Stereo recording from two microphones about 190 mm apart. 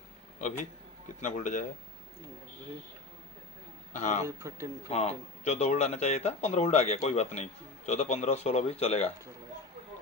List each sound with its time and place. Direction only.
1.2 s speech: 40° left (ahead or behind)
3.9 s speech: 40° left (ahead or behind)
4.4 s speech: 15° right (ahead or behind)
4.9 s speech: 35° left (ahead or behind)